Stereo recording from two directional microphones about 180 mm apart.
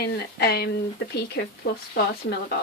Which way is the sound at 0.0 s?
60° left (ahead or behind).